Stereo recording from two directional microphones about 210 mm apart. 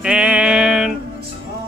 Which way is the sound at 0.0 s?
5° right (ahead or behind).